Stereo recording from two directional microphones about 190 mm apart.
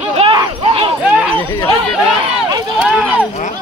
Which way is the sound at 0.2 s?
25° right (ahead or behind).